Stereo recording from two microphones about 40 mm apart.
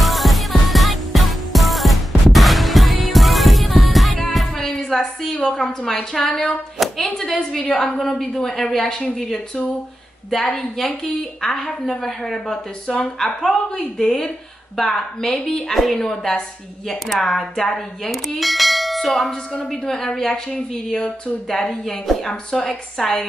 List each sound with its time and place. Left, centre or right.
0.0 s music: centre
4.6 s a woman's voice: centre
6.8 s a sound: centre
7.2 s a woman's voice: centre
10.3 s a woman's voice: centre
19.6 s a woman's voice: centre